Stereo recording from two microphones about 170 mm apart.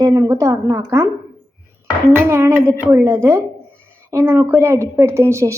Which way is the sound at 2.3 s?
15° right (ahead or behind).